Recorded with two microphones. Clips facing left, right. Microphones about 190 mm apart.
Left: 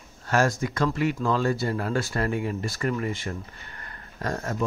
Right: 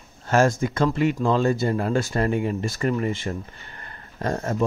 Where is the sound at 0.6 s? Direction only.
25° right (ahead or behind).